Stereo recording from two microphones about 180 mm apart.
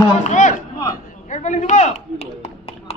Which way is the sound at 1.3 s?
40° left (ahead or behind).